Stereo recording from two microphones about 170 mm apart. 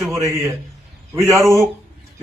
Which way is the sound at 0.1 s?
15° right (ahead or behind).